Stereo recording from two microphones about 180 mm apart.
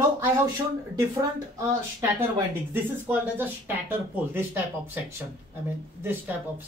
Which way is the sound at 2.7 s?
10° right (ahead or behind).